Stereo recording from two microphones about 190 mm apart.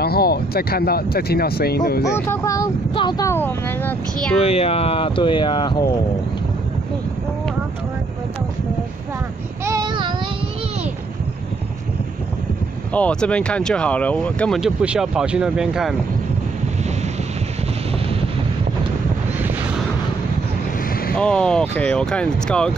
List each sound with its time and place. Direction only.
0.0 s speech: 55° left (ahead or behind)
2.1 s speech: 10° left (ahead or behind)
4.4 s speech: 30° left (ahead or behind)
9.7 s child singing: 20° right (ahead or behind)
12.9 s speech: 5° left (ahead or behind)
21.2 s speech: 5° left (ahead or behind)